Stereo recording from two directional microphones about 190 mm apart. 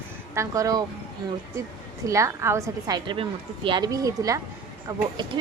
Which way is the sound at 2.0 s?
15° right (ahead or behind).